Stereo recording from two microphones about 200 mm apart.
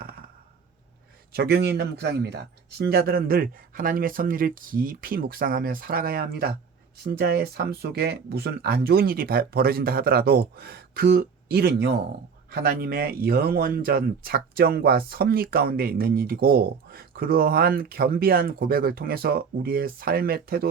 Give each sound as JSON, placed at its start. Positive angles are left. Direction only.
{"t": 1.3, "sound": "a man's voice", "side_deg": -50}